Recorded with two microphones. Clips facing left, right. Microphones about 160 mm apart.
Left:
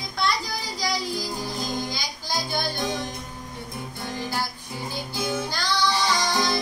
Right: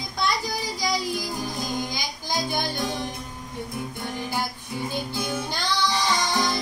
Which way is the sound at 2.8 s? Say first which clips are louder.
Even; 20° left (ahead or behind).